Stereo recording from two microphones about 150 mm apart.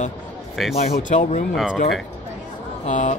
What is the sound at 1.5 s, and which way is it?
Speech, centre (ahead or behind).